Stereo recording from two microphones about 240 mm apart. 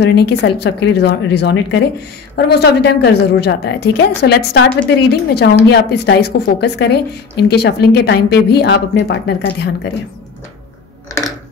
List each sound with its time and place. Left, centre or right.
0.0 s a woman's voice: left